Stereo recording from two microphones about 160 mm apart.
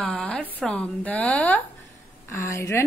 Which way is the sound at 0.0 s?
5° left (ahead or behind).